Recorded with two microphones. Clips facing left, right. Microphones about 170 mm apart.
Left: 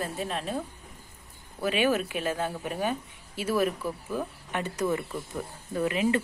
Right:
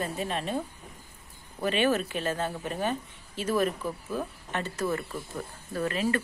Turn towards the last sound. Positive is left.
turn(degrees=15)  # may be behind; listen again after turning